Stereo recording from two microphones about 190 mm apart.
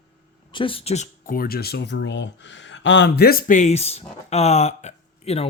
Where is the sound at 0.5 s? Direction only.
25° left (ahead or behind).